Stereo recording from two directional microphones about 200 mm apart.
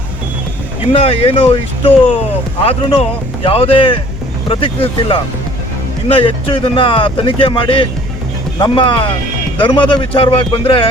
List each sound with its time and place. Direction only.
0.9 s speech: 30° left (ahead or behind)